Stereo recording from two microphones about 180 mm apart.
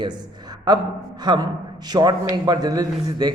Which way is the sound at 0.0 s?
25° right (ahead or behind).